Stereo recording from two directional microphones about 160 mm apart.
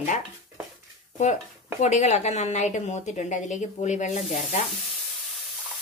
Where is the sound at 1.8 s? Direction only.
45° left (ahead or behind).